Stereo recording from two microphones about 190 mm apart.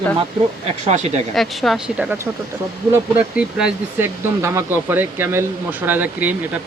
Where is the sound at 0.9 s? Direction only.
35° right (ahead or behind).